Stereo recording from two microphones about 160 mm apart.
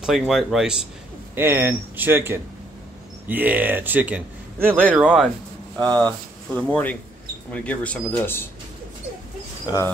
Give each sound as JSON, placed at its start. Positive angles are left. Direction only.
{"t": 0.0, "sound": "speech", "side_deg": 0}
{"t": 1.3, "sound": "a man's voice", "side_deg": -15}
{"t": 6.0, "sound": "speech", "side_deg": 10}
{"t": 9.7, "sound": "speech", "side_deg": 30}